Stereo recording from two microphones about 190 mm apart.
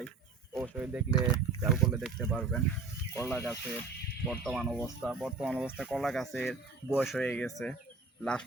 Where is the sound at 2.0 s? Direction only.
Centre (ahead or behind).